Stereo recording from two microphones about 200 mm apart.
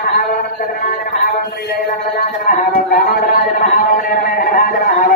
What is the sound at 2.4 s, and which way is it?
Speech, 45° left (ahead or behind).